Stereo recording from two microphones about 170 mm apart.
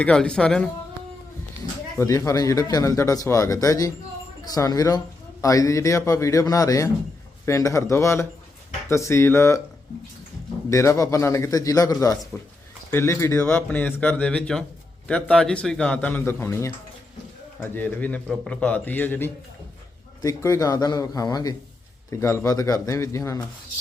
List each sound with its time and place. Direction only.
0.0 s speech: 5° left (ahead or behind)
2.0 s a man's voice: 20° left (ahead or behind)
10.7 s a man's voice: 20° left (ahead or behind)